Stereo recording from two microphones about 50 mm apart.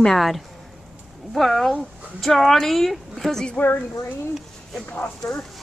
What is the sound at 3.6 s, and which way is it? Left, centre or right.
Speech, left.